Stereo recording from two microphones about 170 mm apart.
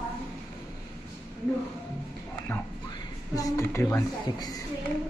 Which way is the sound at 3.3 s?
20° left (ahead or behind).